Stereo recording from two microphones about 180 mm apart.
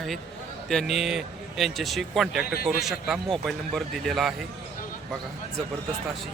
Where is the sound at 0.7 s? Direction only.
Centre (ahead or behind).